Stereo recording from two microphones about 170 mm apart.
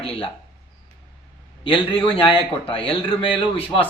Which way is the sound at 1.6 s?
30° left (ahead or behind).